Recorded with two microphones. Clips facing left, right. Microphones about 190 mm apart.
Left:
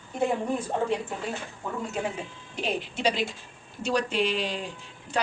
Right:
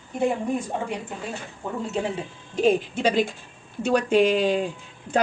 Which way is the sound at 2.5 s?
45° right (ahead or behind).